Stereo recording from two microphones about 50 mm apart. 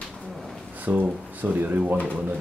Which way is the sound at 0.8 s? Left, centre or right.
Right.